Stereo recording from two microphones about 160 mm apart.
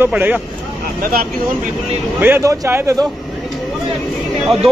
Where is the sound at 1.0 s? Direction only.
65° right (ahead or behind).